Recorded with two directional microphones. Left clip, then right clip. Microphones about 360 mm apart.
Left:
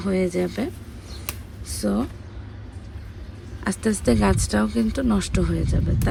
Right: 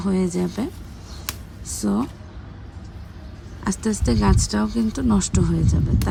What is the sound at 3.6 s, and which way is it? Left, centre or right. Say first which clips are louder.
Speech: left 2 dB; centre.